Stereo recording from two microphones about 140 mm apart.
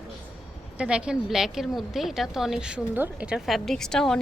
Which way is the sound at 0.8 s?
5° right (ahead or behind).